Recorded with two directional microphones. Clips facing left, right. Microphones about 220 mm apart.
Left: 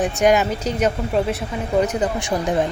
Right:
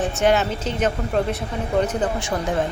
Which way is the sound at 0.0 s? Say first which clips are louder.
Left 2 dB; 15° left (ahead or behind).